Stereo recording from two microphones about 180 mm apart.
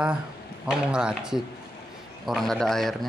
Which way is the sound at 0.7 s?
5° right (ahead or behind).